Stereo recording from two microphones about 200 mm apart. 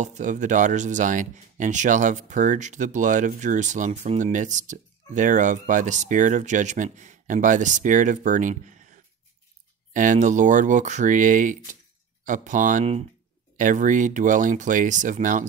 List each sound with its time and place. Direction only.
0.0 s speech: 40° right (ahead or behind)
9.9 s speech: 40° right (ahead or behind)